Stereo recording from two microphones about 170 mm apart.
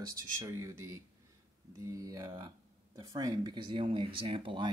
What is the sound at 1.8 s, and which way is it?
Speech, 20° right (ahead or behind).